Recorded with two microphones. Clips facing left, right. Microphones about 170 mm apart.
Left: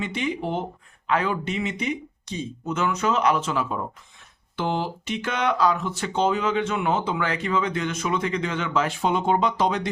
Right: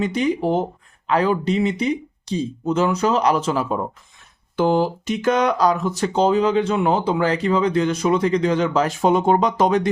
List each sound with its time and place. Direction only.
0.0 s speech: 40° right (ahead or behind)